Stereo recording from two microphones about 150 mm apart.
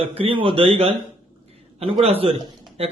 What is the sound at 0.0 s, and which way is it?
Speech, 40° right (ahead or behind).